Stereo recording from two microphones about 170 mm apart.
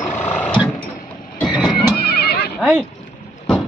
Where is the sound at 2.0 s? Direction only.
70° left (ahead or behind).